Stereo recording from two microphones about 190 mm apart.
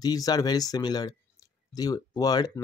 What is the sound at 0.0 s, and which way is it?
Speech, 20° left (ahead or behind).